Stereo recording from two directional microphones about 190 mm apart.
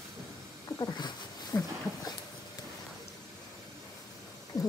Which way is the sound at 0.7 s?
20° left (ahead or behind).